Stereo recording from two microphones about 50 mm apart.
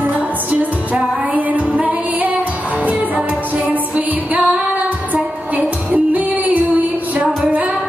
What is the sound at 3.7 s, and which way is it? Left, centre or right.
Music, right.